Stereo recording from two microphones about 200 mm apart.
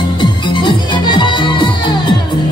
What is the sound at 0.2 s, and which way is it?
Music, 25° left (ahead or behind).